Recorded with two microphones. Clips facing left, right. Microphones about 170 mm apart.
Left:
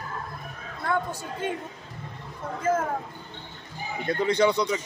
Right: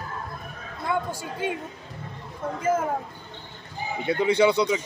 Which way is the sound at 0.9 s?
10° right (ahead or behind).